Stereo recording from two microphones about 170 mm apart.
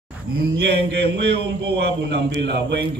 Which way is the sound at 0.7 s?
85° right.